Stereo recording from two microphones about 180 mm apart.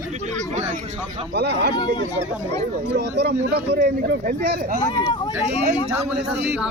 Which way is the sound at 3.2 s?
65° right (ahead or behind).